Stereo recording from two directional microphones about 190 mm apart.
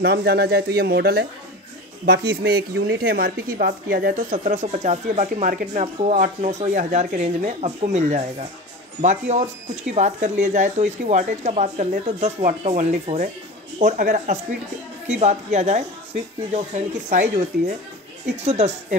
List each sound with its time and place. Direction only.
0.0 s speech: 55° right (ahead or behind); by 18.9 s 35° right (ahead or behind)